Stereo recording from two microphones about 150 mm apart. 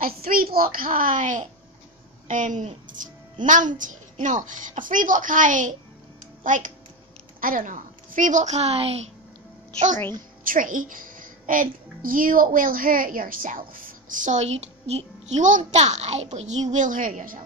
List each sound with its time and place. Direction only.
0.0 s a child's voice: 75° right (ahead or behind); by 9.0 s 40° right (ahead or behind)
10.4 s a child's voice: 65° right (ahead or behind)